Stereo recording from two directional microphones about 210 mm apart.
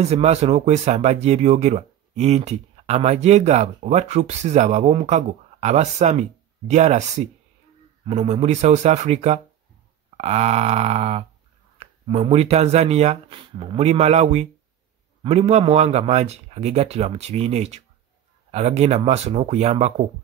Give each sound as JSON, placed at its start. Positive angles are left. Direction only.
{"t": 0.0, "sound": "speech", "side_deg": -30}